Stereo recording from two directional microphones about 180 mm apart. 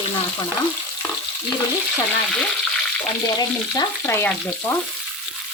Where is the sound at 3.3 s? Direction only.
20° left (ahead or behind).